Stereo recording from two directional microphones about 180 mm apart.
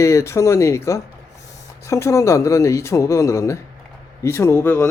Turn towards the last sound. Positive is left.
turn(degrees=15)  # may be behind; listen again after turning